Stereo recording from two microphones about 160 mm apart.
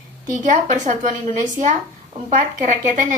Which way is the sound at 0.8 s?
55° right (ahead or behind).